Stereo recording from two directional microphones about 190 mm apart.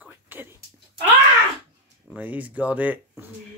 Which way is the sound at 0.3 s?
10° right (ahead or behind).